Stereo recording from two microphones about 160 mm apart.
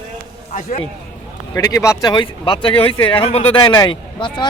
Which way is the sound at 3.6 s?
25° left (ahead or behind).